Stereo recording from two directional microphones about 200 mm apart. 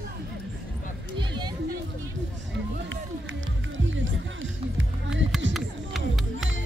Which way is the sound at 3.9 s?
75° right (ahead or behind).